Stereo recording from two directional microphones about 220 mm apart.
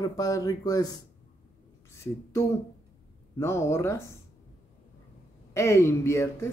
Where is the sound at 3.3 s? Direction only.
10° left (ahead or behind).